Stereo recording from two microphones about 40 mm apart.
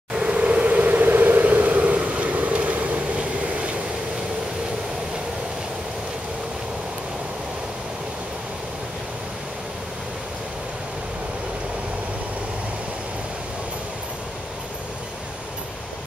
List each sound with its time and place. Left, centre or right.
0.1 s vehicle: right